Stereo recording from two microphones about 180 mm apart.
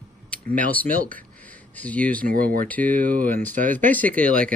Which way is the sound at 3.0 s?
50° right (ahead or behind).